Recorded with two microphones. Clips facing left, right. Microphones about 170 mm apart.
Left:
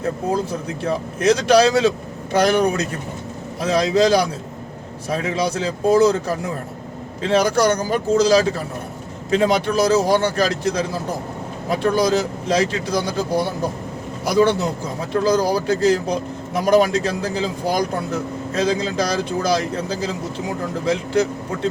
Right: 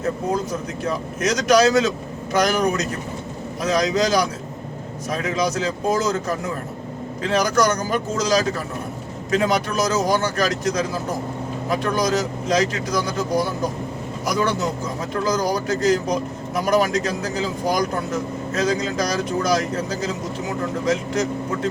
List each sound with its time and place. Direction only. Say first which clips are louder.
0.8 s a man's voice: left 3 dB; 30° left (ahead or behind)